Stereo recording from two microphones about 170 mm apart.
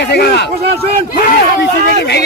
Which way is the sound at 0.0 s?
80° left.